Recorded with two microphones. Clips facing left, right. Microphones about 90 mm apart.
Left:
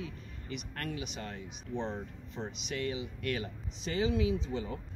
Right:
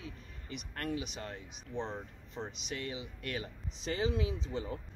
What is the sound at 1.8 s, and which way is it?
Speech, 5° right (ahead or behind).